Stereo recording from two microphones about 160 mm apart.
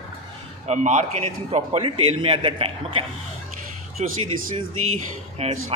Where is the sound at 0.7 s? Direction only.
45° right (ahead or behind).